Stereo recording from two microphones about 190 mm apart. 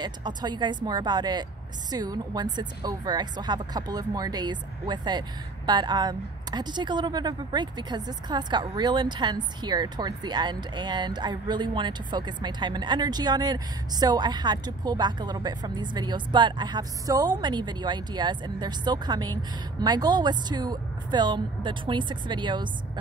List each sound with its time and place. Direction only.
0.0 s speech: 20° right (ahead or behind)